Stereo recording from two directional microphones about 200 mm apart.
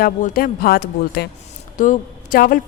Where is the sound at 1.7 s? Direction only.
40° left (ahead or behind).